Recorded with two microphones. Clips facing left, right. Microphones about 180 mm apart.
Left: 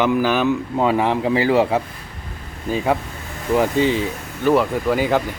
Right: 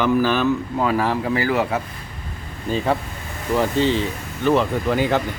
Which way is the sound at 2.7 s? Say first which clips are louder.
Left 1 dB; 10° left (ahead or behind).